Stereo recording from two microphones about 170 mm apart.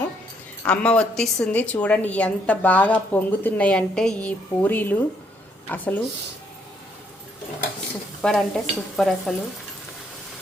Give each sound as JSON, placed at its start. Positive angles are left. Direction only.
{"t": 0.7, "sound": "a woman's voice", "side_deg": 5}
{"t": 8.2, "sound": "speech", "side_deg": 5}